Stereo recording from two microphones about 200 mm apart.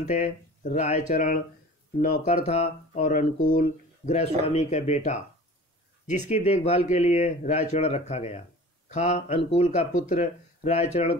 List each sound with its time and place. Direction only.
0.0 s speech: 35° left (ahead or behind)